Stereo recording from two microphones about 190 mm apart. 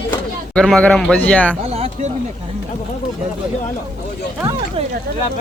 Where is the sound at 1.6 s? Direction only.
30° right (ahead or behind).